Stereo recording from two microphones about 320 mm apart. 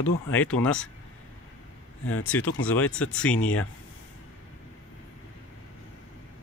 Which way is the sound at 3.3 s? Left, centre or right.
Left.